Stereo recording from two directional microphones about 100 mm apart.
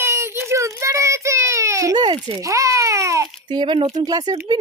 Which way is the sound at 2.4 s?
30° right (ahead or behind).